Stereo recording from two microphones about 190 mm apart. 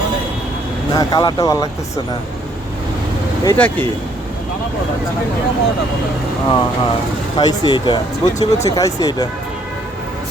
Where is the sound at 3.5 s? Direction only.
10° left (ahead or behind).